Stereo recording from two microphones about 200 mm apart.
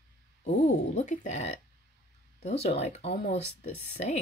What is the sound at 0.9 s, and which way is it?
Speech, 35° left (ahead or behind).